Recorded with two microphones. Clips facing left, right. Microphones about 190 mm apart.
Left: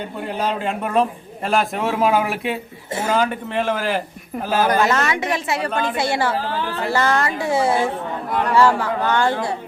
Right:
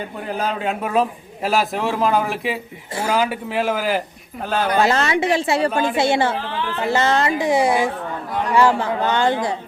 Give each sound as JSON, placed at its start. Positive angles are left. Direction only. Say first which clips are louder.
{"t": 0.3, "sound": "a man's voice", "louder": "even", "side_deg": 0}
{"t": 4.8, "sound": "a woman's voice", "louder": "right 2 dB", "side_deg": -30}
{"t": 5.7, "sound": "speech", "louder": "right 2 dB", "side_deg": -10}
{"t": 6.0, "sound": "a woman's voice", "louder": "right 3 dB", "side_deg": -25}